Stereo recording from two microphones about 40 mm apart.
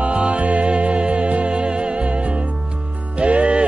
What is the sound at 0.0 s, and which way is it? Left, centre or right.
Music, right.